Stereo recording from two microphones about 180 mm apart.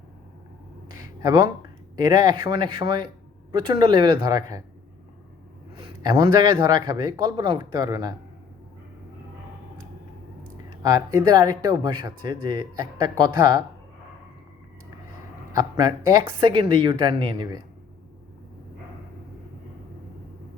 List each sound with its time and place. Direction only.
1.2 s speech: 20° right (ahead or behind)
5.7 s speech: 20° right (ahead or behind)
10.8 s speech: 20° right (ahead or behind)
15.5 s speech: 20° right (ahead or behind)